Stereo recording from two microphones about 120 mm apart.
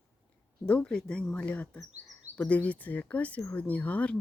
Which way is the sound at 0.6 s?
10° left (ahead or behind).